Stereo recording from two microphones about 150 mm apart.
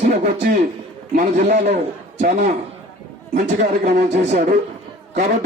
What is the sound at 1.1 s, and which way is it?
Speech, 50° right (ahead or behind).